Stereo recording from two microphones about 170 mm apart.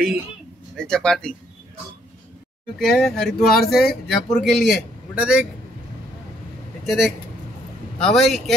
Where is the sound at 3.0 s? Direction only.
Centre (ahead or behind).